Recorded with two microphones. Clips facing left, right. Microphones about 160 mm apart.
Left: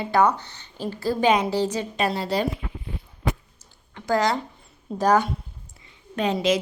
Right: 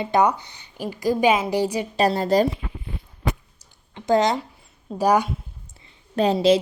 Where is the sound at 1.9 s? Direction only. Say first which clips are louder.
Right 7 dB; 45° right (ahead or behind).